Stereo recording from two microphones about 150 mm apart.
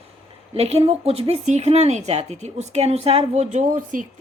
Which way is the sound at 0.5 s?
45° right (ahead or behind).